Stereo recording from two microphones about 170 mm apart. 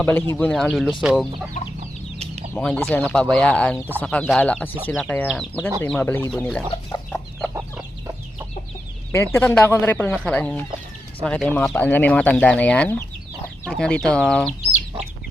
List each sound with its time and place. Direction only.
0.0 s speech: 10° left (ahead or behind)
1.6 s chicken: 55° left (ahead or behind)
2.6 s speech: 5° left (ahead or behind)
9.1 s speech: 15° left (ahead or behind)